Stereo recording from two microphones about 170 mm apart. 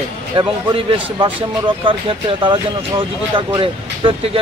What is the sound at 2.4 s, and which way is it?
A man's voice, 30° right (ahead or behind).